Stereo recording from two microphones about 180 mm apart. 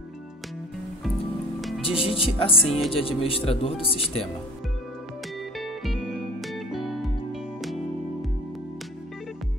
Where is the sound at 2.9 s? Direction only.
30° left (ahead or behind).